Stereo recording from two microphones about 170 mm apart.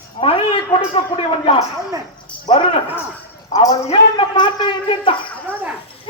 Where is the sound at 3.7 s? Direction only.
35° left (ahead or behind).